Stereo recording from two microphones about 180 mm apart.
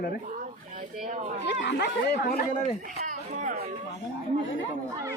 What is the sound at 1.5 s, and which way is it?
Speech, 70° left (ahead or behind).